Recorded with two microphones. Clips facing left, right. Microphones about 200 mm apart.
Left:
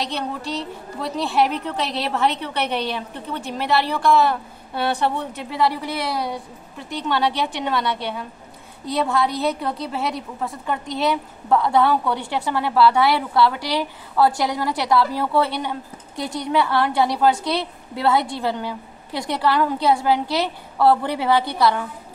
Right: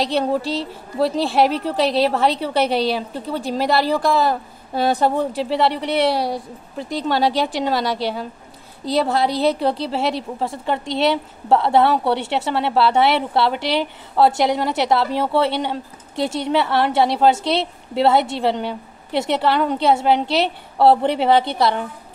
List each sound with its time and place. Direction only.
0.0 s a woman's voice: 35° right (ahead or behind)
5.7 s a woman's voice: 70° right (ahead or behind)
6.0 s a woman's voice: 35° right (ahead or behind)
9.4 s a woman's voice: 30° right (ahead or behind)
12.1 s a woman's voice: 70° right (ahead or behind)
12.4 s a woman's voice: 25° right (ahead or behind)